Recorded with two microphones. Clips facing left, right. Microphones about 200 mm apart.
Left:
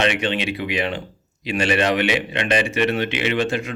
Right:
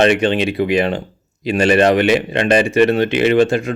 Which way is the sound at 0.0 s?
45° right (ahead or behind).